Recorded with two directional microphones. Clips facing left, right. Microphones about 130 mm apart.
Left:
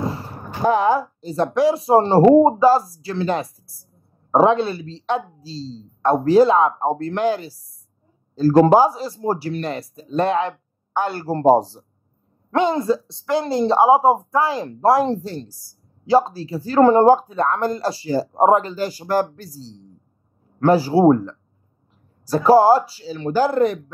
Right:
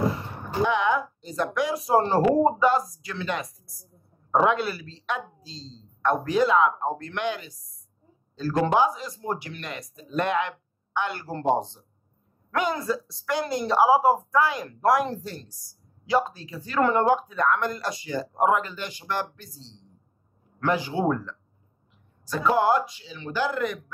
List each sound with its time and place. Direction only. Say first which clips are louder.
0.1 s speech: even; 35° left (ahead or behind)
12.4 s a woman's voice: left 8 dB; 25° left (ahead or behind)